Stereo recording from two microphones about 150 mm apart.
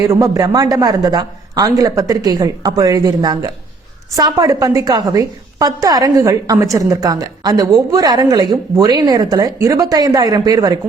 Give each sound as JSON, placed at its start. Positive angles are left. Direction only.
{"t": 0.0, "sound": "a woman's voice", "side_deg": -20}